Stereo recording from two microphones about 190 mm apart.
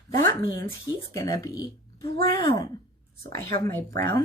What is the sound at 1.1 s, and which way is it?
Speech, 20° left (ahead or behind).